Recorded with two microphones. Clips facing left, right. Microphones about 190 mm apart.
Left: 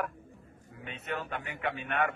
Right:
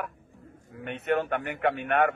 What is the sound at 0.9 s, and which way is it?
A man's voice, 65° right (ahead or behind).